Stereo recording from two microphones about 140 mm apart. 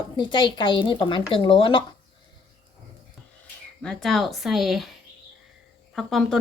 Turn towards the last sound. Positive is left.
turn(degrees=0)  # may be behind; listen again after turning